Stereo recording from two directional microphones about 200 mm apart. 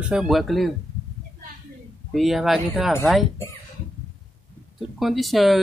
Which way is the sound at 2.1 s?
Centre (ahead or behind).